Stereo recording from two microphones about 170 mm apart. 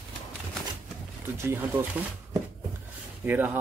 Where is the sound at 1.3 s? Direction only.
15° right (ahead or behind).